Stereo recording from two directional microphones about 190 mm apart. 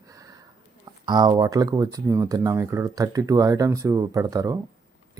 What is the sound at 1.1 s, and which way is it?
Speech, 20° right (ahead or behind).